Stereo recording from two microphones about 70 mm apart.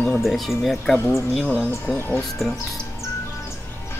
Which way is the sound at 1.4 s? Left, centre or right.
Left.